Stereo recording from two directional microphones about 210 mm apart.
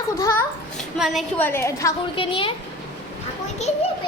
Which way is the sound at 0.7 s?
Centre (ahead or behind).